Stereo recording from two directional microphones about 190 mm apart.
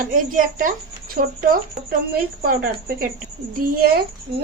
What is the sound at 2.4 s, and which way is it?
A woman's voice, 50° right (ahead or behind).